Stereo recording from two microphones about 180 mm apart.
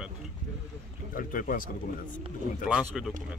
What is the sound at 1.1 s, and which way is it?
Speech, 50° left (ahead or behind).